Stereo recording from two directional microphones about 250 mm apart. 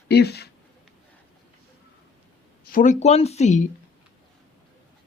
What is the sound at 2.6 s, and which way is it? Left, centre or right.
Speech, left.